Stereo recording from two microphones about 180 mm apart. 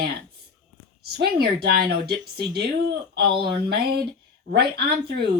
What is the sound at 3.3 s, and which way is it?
Speech, 25° right (ahead or behind).